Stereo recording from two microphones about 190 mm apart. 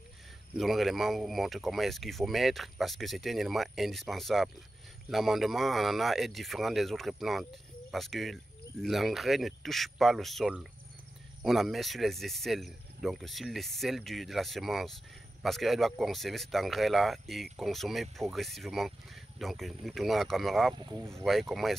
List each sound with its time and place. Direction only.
0.6 s speech: centre (ahead or behind)
20.7 s speech: 20° right (ahead or behind)
21.1 s speech: centre (ahead or behind)